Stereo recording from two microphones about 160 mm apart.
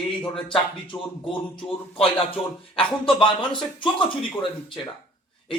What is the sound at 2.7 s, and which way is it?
Speech, 35° left (ahead or behind).